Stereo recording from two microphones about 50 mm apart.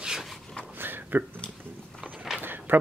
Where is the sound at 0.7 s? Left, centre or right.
Right.